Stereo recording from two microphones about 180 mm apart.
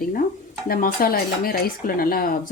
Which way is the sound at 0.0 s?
50° left (ahead or behind).